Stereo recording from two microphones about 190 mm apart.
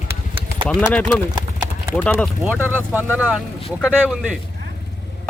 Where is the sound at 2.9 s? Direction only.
10° right (ahead or behind).